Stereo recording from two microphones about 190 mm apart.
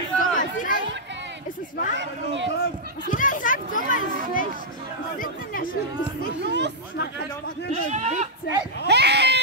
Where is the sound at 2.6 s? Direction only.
45° left (ahead or behind).